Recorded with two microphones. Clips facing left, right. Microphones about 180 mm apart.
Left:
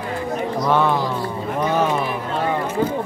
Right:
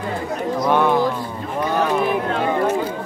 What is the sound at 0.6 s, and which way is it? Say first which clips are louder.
Speech: right 2 dB; 15° right (ahead or behind).